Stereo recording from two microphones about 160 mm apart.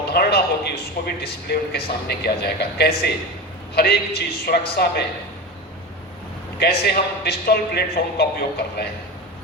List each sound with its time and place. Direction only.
0.1 s a sound: 80° left
1.0 s a man's voice: 80° left
6.6 s a man's voice: 85° left